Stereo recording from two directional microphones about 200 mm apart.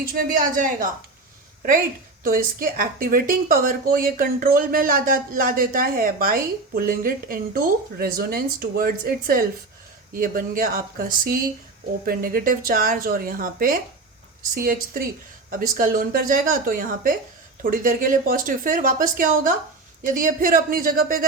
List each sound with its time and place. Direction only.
0.0 s a woman's voice: 45° right (ahead or behind)
2.2 s a woman's voice: 45° right (ahead or behind)